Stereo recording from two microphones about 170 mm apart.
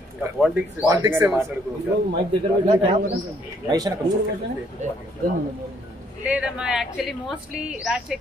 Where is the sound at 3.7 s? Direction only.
20° right (ahead or behind).